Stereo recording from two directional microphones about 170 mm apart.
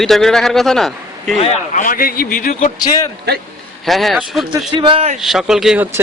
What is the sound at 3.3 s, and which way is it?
Speech, 70° right (ahead or behind).